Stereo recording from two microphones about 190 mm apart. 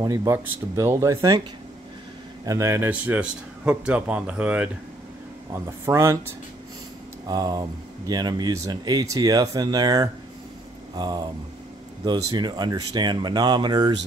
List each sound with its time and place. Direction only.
0.0 s speech: 15° right (ahead or behind)
2.4 s speech: 15° right (ahead or behind)
7.2 s speech: 20° right (ahead or behind)
12.3 s speech: 20° right (ahead or behind)